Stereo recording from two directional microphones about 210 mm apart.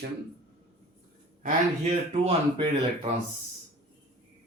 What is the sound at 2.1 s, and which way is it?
Speech, 30° right (ahead or behind).